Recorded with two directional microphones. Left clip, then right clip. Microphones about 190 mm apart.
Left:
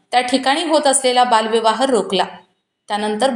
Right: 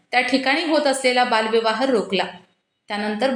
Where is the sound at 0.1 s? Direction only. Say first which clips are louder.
Left 3 dB; 30° left (ahead or behind).